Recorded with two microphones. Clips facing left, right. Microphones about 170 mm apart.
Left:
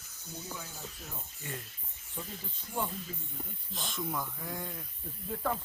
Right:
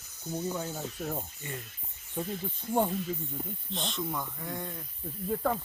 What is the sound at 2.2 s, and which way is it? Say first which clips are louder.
Speech: right 9 dB; 40° right (ahead or behind).